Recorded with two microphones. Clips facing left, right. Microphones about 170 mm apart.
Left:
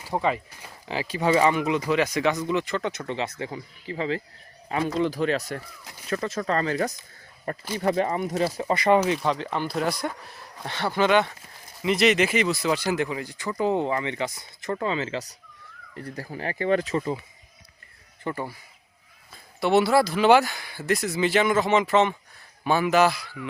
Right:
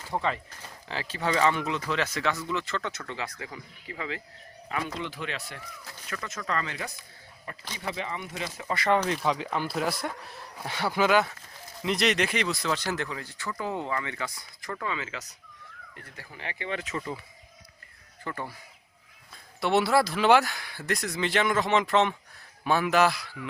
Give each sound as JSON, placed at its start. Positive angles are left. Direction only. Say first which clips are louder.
{"t": 0.0, "sound": "speech", "louder": "left 4 dB", "side_deg": 15}
{"t": 5.8, "sound": "speech", "louder": "left 1 dB", "side_deg": 15}
{"t": 6.1, "sound": "speech", "louder": "left 8 dB", "side_deg": 30}
{"t": 8.7, "sound": "speech", "louder": "left 4 dB", "side_deg": 15}
{"t": 18.2, "sound": "speech", "louder": "left 5 dB", "side_deg": 20}
{"t": 19.3, "sound": "speech", "louder": "left 4 dB", "side_deg": 0}